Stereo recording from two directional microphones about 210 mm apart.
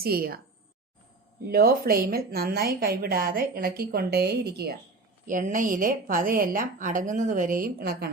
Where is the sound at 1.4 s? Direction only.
45° right (ahead or behind).